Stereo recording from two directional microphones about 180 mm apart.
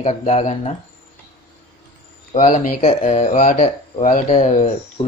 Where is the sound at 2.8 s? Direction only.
35° left (ahead or behind).